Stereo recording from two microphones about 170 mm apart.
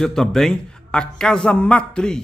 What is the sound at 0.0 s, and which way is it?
A man's voice, centre (ahead or behind).